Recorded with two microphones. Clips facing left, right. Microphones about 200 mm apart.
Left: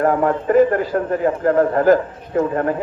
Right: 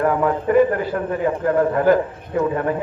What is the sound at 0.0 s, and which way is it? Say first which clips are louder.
A man's voice: left 2 dB; 45° left (ahead or behind).